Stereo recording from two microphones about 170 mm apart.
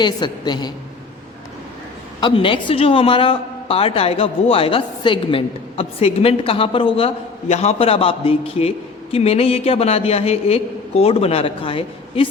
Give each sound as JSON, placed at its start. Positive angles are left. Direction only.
{"t": 0.0, "sound": "a woman's voice", "side_deg": 25}
{"t": 2.2, "sound": "a man's voice", "side_deg": 30}